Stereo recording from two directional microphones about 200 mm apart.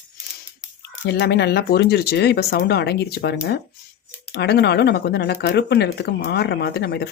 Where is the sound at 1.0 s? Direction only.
55° left (ahead or behind).